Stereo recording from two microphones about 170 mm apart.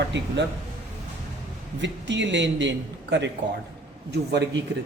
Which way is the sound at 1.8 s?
90° right.